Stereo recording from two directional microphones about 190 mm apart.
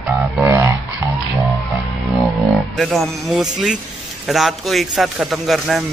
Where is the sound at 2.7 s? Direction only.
Centre (ahead or behind).